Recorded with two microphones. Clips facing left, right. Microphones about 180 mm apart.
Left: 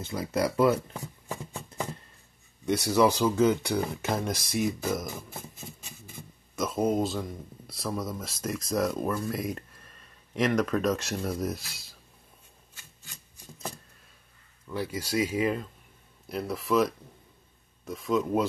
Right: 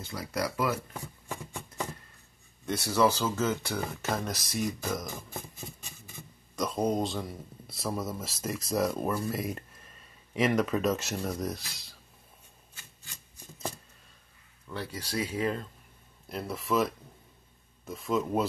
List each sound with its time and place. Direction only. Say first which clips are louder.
0.0 s speech: left 5 dB; 20° left (ahead or behind)
2.6 s speech: left 3 dB; 15° left (ahead or behind)
6.5 s speech: left 2 dB; 5° left (ahead or behind)
14.7 s speech: left 5 dB; 10° left (ahead or behind)